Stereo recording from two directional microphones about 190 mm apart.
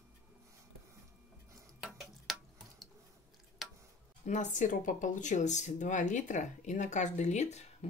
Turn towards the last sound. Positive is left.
turn(degrees=35)  # may be behind; listen again after turning